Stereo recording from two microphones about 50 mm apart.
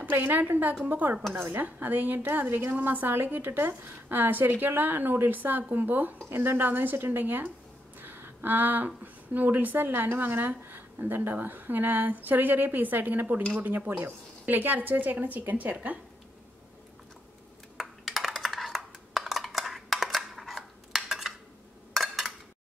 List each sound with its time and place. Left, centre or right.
0.0 s a woman's voice: right
6.2 s a woman's voice: right
17.7 s a sound: centre